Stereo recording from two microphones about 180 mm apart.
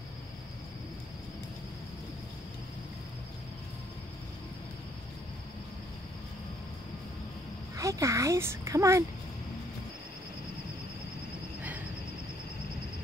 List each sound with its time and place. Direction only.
7.7 s a child's voice: 15° right (ahead or behind)